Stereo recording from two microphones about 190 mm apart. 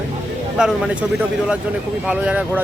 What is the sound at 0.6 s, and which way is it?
Speech, 5° right (ahead or behind).